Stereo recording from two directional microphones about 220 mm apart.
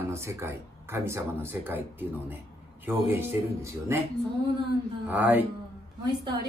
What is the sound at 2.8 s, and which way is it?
Speech, 10° right (ahead or behind).